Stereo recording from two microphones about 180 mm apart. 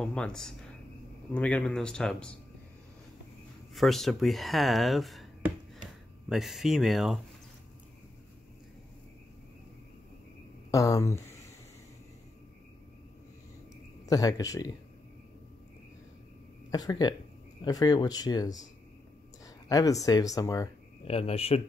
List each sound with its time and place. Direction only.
0.0 s speech: 5° left (ahead or behind)
3.7 s speech: centre (ahead or behind)
10.7 s speech: 20° left (ahead or behind)
14.0 s speech: 20° left (ahead or behind)
16.7 s speech: 20° left (ahead or behind)
21.0 s speech: 35° left (ahead or behind)